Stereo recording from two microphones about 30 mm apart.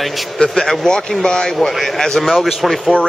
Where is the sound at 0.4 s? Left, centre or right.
Centre.